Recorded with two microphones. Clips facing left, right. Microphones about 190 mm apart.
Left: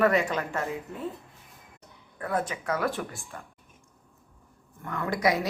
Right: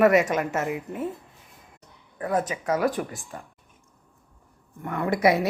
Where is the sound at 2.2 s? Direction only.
20° right (ahead or behind).